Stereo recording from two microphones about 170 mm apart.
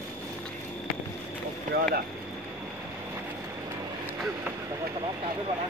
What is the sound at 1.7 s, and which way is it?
Speech, 50° right (ahead or behind).